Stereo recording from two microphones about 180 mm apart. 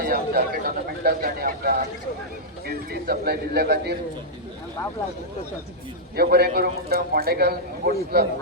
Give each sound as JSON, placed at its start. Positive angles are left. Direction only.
{"t": 0.0, "sound": "a man's voice", "side_deg": -55}
{"t": 6.1, "sound": "a man's voice", "side_deg": -60}